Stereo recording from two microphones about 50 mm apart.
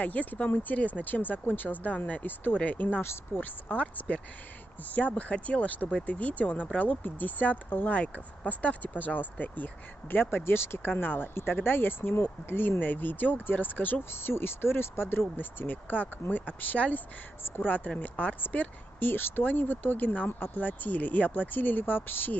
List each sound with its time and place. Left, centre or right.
0.0 s speech: left
2.2 s speech: left
2.6 s speech: left
10.3 s speech: left
14.1 s speech: left
15.6 s speech: left